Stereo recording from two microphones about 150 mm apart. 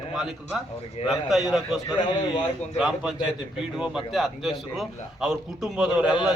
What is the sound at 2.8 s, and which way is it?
A man's voice, 5° right (ahead or behind).